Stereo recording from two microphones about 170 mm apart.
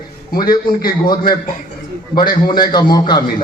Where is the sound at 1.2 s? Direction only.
55° left (ahead or behind).